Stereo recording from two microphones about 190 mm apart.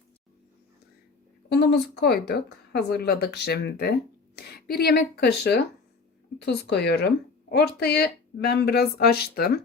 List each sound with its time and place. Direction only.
1.5 s speech: 60° left (ahead or behind)